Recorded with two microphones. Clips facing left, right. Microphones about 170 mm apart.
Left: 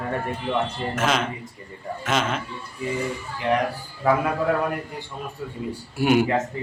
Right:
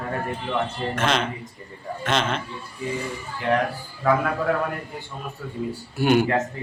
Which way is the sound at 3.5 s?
20° left (ahead or behind).